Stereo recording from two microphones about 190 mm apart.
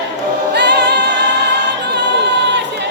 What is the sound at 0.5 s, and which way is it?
Music, 60° right (ahead or behind).